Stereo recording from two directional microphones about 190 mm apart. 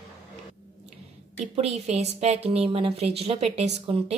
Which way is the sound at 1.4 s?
35° right (ahead or behind).